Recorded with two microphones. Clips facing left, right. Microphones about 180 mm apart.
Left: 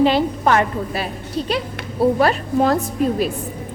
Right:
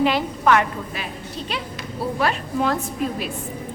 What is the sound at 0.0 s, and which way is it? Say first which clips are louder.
A woman's voice: left 4 dB; 35° left (ahead or behind).